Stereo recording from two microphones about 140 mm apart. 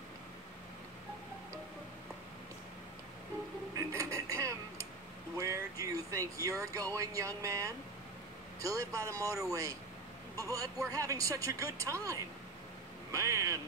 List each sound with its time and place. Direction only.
3.7 s radio: 20° right (ahead or behind)
5.4 s a sound: 25° right (ahead or behind)
7.0 s speech: 25° right (ahead or behind)